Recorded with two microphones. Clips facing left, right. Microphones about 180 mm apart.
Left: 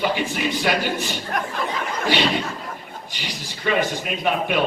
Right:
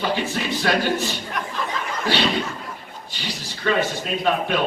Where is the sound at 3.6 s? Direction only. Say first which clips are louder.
Even; 15° left (ahead or behind).